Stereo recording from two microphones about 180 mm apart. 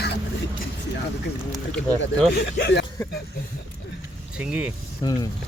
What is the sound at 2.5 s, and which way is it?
Speech, 65° left (ahead or behind).